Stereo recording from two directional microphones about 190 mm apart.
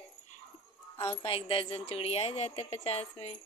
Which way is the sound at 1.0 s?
30° left (ahead or behind).